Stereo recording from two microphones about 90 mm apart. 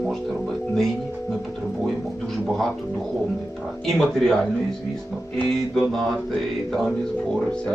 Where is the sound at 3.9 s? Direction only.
5° left (ahead or behind).